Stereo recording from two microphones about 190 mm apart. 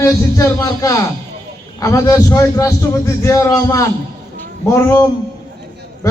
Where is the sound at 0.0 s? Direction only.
15° left (ahead or behind).